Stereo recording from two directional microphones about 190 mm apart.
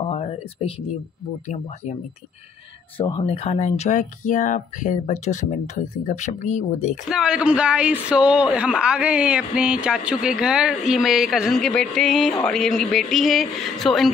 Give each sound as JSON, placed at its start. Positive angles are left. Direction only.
{"t": 0.0, "sound": "a sound", "side_deg": 30}
{"t": 3.1, "sound": "speech", "side_deg": 30}
{"t": 7.1, "sound": "a man's voice", "side_deg": -5}